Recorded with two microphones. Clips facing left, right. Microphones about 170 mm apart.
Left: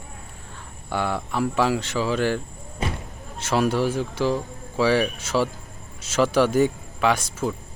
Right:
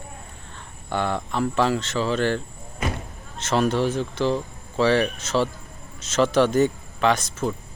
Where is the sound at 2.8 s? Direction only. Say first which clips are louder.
Right 1 dB; 30° left (ahead or behind).